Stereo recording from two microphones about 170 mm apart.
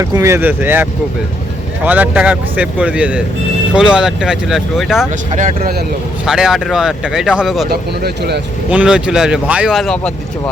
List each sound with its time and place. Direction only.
0.0 s speech: 15° right (ahead or behind); by 5.0 s centre (ahead or behind)
5.3 s speech: 45° right (ahead or behind)
6.2 s speech: 5° right (ahead or behind)
7.7 s speech: 70° right (ahead or behind)
8.7 s speech: 5° right (ahead or behind)